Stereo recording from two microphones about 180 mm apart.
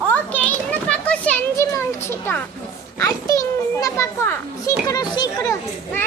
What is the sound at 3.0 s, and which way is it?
A child's voice, 20° left (ahead or behind).